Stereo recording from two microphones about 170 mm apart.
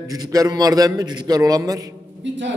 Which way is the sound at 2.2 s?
90° right.